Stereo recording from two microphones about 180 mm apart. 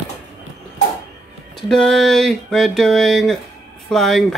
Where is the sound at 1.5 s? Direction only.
5° left (ahead or behind).